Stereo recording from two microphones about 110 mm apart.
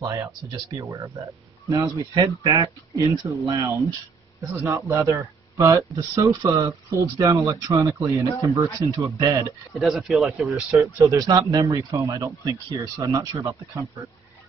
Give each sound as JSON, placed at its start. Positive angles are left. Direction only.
{"t": 0.0, "sound": "speech", "side_deg": -35}
{"t": 9.8, "sound": "speech", "side_deg": 0}
{"t": 10.8, "sound": "speech", "side_deg": -30}